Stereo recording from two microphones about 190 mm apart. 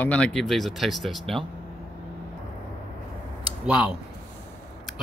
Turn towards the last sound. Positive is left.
turn(degrees=-5)  # may be behind; listen again after turning